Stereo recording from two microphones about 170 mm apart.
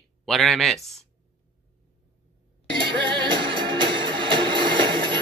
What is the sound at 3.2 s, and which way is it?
Music, 30° right (ahead or behind).